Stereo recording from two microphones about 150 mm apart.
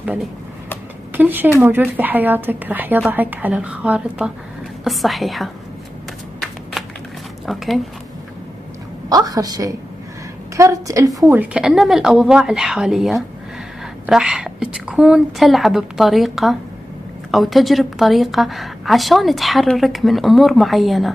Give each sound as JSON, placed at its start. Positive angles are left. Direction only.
{"t": 0.0, "sound": "a woman's voice", "side_deg": -10}
{"t": 6.8, "sound": "a sound", "side_deg": 0}
{"t": 7.4, "sound": "a woman's voice", "side_deg": 0}
{"t": 9.1, "sound": "a woman's voice", "side_deg": -25}
{"t": 11.3, "sound": "a woman's voice", "side_deg": -5}